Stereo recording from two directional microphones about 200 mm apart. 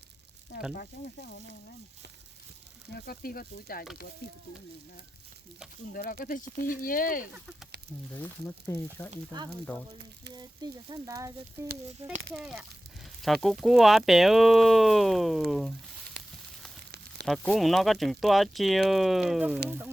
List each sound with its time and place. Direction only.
0.7 s speech: 50° left (ahead or behind)
2.9 s speech: 45° left (ahead or behind)
5.9 s speech: 45° left (ahead or behind)
8.1 s speech: 10° left (ahead or behind)
9.3 s frying: 20° right (ahead or behind)
10.3 s speech: 20° right (ahead or behind)
12.3 s speech: centre (ahead or behind)
17.2 s speech: centre (ahead or behind)